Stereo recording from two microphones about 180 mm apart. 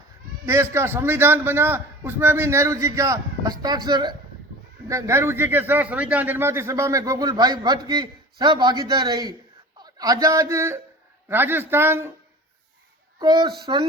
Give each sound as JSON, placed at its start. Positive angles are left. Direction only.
{"t": 0.4, "sound": "a man's voice", "side_deg": -15}
{"t": 13.1, "sound": "speech", "side_deg": -25}